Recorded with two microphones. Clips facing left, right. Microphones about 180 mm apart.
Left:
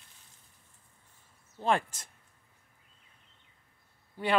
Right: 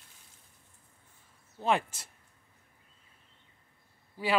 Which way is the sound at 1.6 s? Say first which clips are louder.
Even; 10° right (ahead or behind).